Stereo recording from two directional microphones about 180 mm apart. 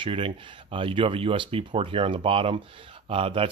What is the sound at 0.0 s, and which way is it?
Speech, 30° right (ahead or behind).